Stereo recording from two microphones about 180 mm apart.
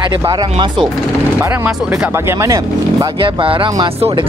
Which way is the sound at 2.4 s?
20° right (ahead or behind).